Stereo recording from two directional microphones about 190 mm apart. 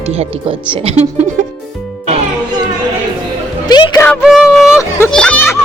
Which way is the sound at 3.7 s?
20° left (ahead or behind).